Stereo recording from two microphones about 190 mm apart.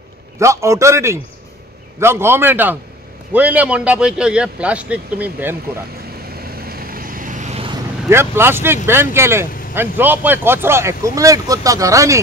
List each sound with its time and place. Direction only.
0.4 s a man's voice: 15° right (ahead or behind)
6.6 s vehicle: 50° right (ahead or behind); by 7.7 s 35° right (ahead or behind)
8.1 s a man's voice: 15° right (ahead or behind)